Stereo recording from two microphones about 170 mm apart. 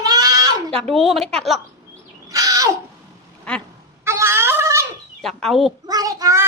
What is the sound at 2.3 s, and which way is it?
Crow, 20° right (ahead or behind).